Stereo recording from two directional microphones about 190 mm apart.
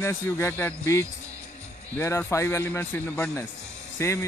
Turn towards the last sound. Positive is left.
turn(degrees=15)  # may be behind; listen again after turning